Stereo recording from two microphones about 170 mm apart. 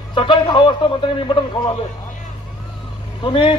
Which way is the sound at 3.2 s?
30° left (ahead or behind).